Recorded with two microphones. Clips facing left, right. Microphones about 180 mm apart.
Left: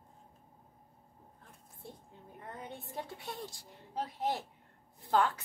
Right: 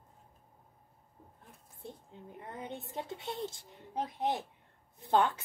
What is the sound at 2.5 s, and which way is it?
A woman's voice, 20° right (ahead or behind).